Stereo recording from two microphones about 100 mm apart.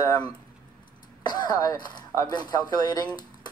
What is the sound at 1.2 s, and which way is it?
A man's voice, 45° left (ahead or behind).